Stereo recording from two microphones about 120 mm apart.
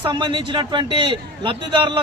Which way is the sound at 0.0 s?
40° right (ahead or behind).